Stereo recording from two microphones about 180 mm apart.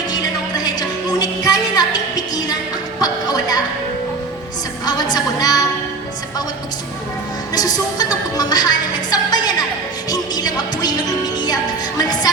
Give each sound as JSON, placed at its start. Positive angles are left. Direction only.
{"t": 0.1, "sound": "music", "side_deg": 20}
{"t": 4.9, "sound": "music", "side_deg": 20}
{"t": 7.5, "sound": "music", "side_deg": 20}